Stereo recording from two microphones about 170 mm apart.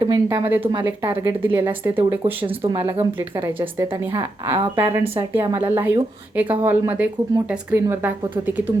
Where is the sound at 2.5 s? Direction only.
35° right (ahead or behind).